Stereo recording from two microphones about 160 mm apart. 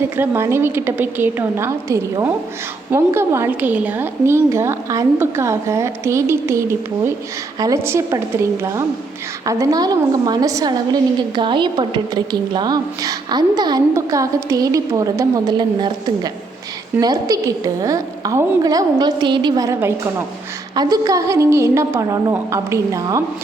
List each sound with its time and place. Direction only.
0.2 s a woman's voice: 15° right (ahead or behind)
9.5 s a woman's voice: 20° right (ahead or behind)